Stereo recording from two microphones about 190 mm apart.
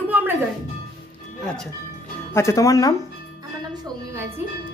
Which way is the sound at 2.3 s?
15° left (ahead or behind).